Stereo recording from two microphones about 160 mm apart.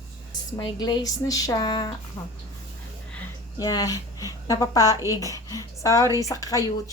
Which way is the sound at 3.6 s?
25° left (ahead or behind).